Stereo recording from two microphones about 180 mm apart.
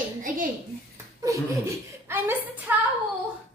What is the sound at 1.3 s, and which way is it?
Speech, 15° right (ahead or behind).